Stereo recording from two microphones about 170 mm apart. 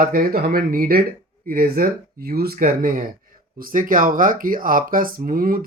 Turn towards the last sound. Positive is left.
turn(degrees=-55)  # may be behind; listen again after turning